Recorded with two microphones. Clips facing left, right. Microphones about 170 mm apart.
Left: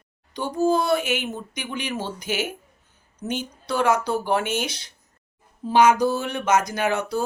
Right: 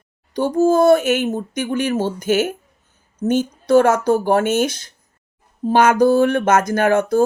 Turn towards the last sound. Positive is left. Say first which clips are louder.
# right 8 dB
turn(degrees=-50)  # may be behind; listen again after turning